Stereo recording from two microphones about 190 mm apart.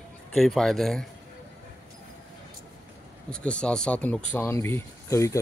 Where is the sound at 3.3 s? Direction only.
5° left (ahead or behind).